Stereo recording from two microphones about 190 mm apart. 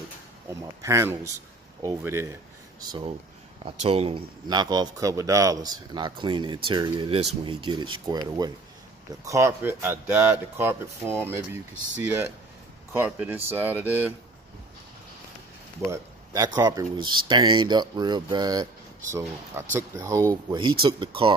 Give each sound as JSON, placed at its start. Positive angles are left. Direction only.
{"t": 0.8, "sound": "speech", "side_deg": -15}
{"t": 2.9, "sound": "speech", "side_deg": -30}
{"t": 15.9, "sound": "speech", "side_deg": -15}
{"t": 19.7, "sound": "speech", "side_deg": -15}